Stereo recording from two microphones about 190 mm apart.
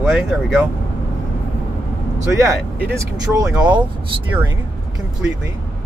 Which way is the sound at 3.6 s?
25° right (ahead or behind).